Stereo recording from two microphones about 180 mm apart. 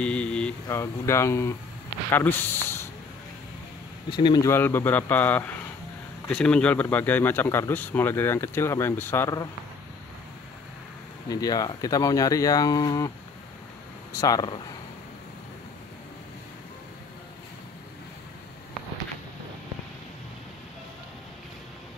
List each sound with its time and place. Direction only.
0.0 s a man's voice: 5° left (ahead or behind)
4.1 s a man's voice: 25° left (ahead or behind)
11.2 s speech: 20° left (ahead or behind)
14.1 s speech: 20° left (ahead or behind)